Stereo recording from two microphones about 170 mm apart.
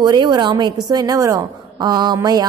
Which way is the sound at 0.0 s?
25° right (ahead or behind).